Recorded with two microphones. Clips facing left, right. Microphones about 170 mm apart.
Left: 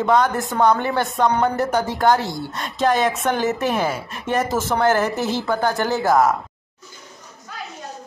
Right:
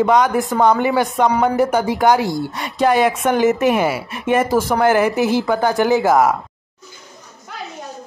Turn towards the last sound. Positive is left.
turn(degrees=-15)  # may be behind; listen again after turning